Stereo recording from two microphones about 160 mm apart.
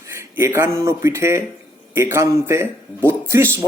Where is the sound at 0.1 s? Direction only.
15° right (ahead or behind).